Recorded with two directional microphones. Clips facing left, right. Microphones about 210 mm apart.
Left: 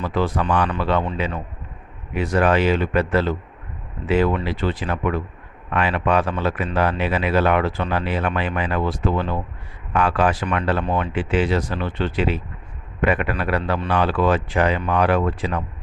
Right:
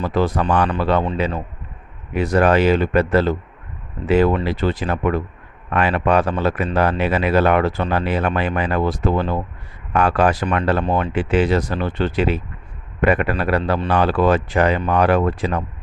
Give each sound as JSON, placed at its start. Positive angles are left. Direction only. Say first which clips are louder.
{"t": 0.0, "sound": "speech", "louder": "right 3 dB", "side_deg": -40}